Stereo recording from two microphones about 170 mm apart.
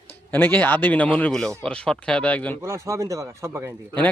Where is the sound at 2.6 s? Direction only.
15° right (ahead or behind).